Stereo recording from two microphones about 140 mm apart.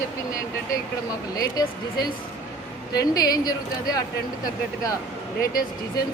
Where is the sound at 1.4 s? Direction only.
30° left (ahead or behind).